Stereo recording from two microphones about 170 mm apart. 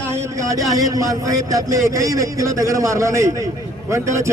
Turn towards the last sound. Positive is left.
turn(degrees=-15)  # may be behind; listen again after turning